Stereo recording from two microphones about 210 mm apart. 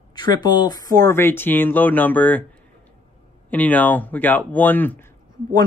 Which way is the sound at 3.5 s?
5° left (ahead or behind).